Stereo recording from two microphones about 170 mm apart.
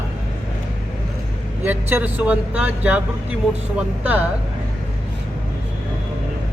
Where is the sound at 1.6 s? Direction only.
10° right (ahead or behind).